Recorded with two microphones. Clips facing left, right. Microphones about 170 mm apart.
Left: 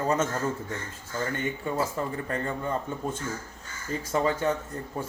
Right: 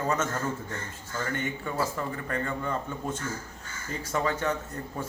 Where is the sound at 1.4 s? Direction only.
25° left (ahead or behind).